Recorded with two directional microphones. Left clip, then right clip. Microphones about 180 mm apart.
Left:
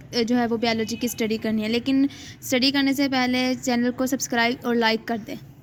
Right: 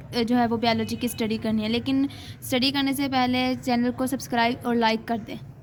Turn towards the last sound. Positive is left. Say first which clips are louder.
# left 1 dB
turn(degrees=30)  # may be behind; listen again after turning